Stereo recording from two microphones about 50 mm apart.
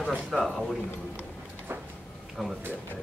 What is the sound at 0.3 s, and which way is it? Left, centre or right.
Speech, centre.